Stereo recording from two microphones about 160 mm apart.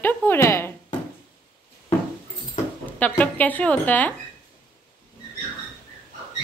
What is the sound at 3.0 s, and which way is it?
A woman's voice, 10° left (ahead or behind).